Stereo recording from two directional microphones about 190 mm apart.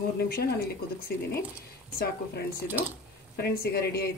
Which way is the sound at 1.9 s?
55° left (ahead or behind).